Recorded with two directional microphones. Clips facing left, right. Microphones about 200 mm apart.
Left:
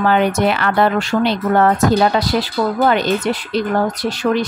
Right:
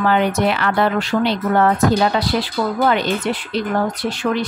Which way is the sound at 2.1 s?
40° left (ahead or behind).